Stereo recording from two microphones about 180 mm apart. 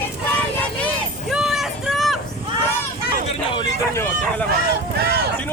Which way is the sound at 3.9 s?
10° left (ahead or behind).